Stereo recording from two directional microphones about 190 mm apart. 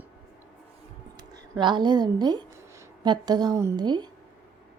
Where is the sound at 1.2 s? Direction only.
20° right (ahead or behind).